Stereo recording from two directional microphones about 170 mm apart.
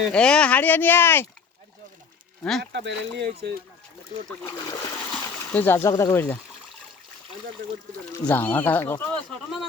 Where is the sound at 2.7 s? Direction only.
90° right.